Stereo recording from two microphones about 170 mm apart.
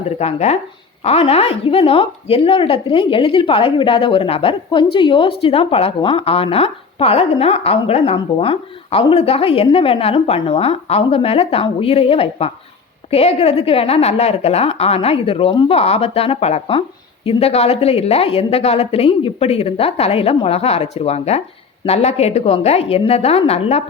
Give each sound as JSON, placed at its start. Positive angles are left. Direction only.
{"t": 0.2, "sound": "a woman's voice", "side_deg": 35}